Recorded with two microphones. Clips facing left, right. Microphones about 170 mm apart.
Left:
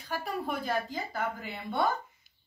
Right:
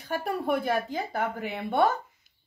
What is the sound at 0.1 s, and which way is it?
Speech, 60° right (ahead or behind).